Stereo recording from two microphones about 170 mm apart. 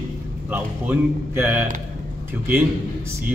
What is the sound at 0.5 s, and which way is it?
A man's voice, 10° right (ahead or behind).